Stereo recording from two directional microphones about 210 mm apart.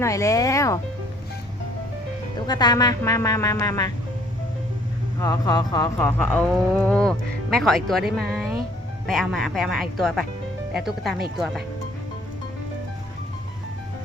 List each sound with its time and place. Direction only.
0.0 s a woman's voice: 15° left (ahead or behind)
2.5 s a woman's voice: 20° left (ahead or behind)
5.2 s a woman's voice: 15° left (ahead or behind)
6.0 s speech: 10° left (ahead or behind)